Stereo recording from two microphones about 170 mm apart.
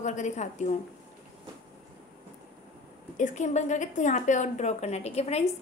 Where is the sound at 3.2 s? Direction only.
45° left (ahead or behind).